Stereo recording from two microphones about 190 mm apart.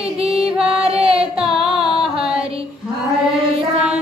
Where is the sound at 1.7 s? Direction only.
5° right (ahead or behind).